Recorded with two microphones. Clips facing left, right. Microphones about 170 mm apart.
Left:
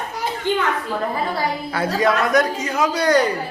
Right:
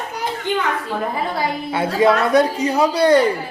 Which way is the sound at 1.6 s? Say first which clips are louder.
Right 4 dB; 25° right (ahead or behind).